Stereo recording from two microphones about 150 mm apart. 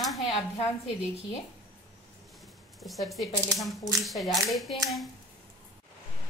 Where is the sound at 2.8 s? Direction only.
Centre (ahead or behind).